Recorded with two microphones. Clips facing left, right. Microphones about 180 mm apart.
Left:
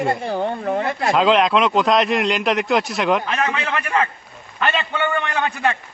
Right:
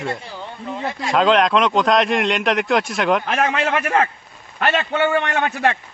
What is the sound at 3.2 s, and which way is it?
Speech, 75° right (ahead or behind).